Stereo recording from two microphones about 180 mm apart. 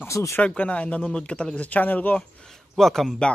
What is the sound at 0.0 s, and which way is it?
A man's voice, 15° left (ahead or behind).